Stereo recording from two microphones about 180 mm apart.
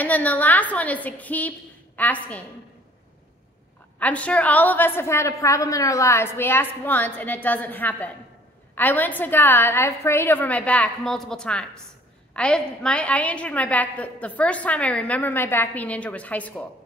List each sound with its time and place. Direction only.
0.0 s a woman's voice: 10° left (ahead or behind)
4.0 s a woman's voice: 5° left (ahead or behind)